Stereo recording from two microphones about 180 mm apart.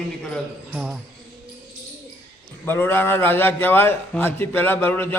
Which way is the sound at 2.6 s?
10° left (ahead or behind).